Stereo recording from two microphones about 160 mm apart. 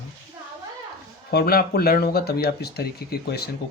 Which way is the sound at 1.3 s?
75° left (ahead or behind).